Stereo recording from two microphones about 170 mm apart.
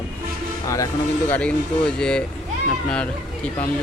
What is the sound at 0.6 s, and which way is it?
Speech, 20° left (ahead or behind).